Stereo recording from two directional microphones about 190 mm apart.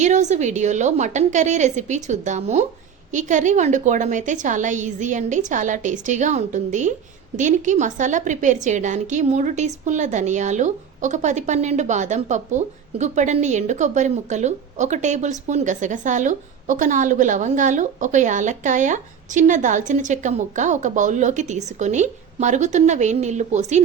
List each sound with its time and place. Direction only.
0.0 s a woman's voice: 40° right (ahead or behind)